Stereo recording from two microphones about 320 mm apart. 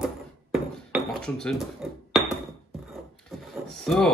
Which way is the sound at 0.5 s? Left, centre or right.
Centre.